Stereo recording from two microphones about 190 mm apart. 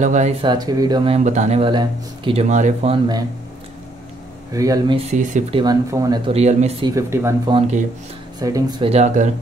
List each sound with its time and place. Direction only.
0.0 s speech: 40° right (ahead or behind)
0.4 s speech: 20° right (ahead or behind)
2.4 s speech: 40° right (ahead or behind)
4.5 s speech: 20° right (ahead or behind)
5.1 s speech: 40° right (ahead or behind)
5.6 s speech: 20° right (ahead or behind)
6.3 s speech: 35° right (ahead or behind)
7.0 s speech: 15° right (ahead or behind)
7.5 s speech: 35° right (ahead or behind)
8.4 s speech: 20° right (ahead or behind)
8.9 s speech: 40° right (ahead or behind)